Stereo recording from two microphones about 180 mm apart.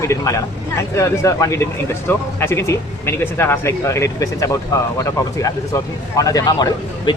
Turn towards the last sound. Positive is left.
turn(degrees=20)  # may be behind; listen again after turning